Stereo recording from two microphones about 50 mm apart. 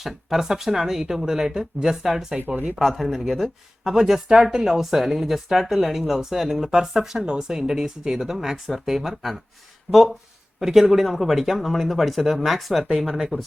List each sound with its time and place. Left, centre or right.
0.0 s speech: centre
9.9 s speech: left
10.6 s speech: centre